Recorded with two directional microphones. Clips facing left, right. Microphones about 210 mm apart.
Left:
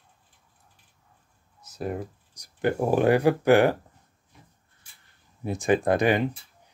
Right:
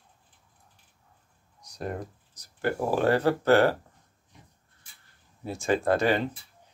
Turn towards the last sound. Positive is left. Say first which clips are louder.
# left 2 dB
turn(degrees=15)  # may be behind; listen again after turning